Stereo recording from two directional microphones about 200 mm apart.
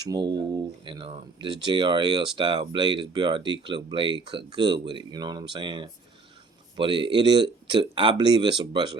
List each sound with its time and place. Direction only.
0.0 s speech: 20° right (ahead or behind)